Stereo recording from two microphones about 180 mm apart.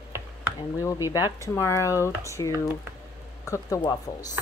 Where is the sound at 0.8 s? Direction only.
20° left (ahead or behind).